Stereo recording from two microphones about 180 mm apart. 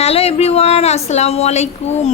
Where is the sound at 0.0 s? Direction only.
35° left (ahead or behind).